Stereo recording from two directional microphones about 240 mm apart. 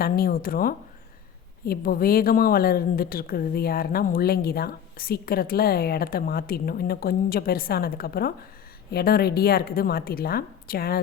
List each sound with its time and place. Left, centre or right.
0.0 s a woman's voice: left